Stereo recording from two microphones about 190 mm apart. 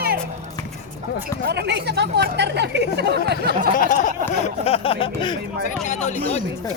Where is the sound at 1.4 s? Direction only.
60° right (ahead or behind).